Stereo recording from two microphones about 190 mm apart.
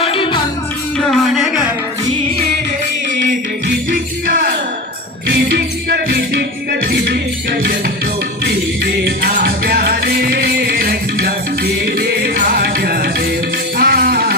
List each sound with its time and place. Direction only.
0.0 s music: 30° left (ahead or behind)
0.9 s music: centre (ahead or behind)
3.9 s music: 50° right (ahead or behind)
5.3 s music: 60° right (ahead or behind)
8.8 s music: 60° right (ahead or behind)